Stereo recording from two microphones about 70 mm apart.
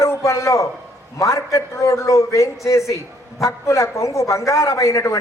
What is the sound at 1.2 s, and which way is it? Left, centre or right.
A man's voice, left.